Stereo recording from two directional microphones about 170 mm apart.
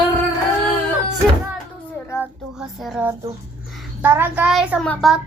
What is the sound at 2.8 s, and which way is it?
A child's voice, 10° right (ahead or behind).